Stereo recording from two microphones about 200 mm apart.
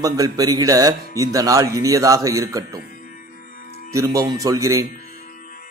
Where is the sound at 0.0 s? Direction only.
15° right (ahead or behind).